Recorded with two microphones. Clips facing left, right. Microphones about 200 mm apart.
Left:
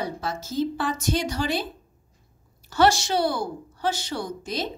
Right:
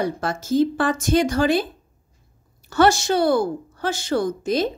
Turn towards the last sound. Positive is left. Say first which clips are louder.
# right 9 dB
turn(degrees=-50)  # may be behind; listen again after turning